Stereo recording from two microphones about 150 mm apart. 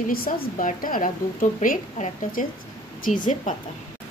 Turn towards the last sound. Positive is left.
turn(degrees=60)  # may be behind; listen again after turning